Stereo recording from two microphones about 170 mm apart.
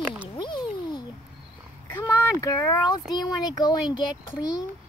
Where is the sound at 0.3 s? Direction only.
25° left (ahead or behind).